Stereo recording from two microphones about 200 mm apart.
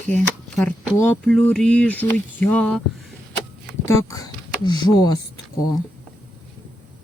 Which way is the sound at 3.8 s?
20° left (ahead or behind).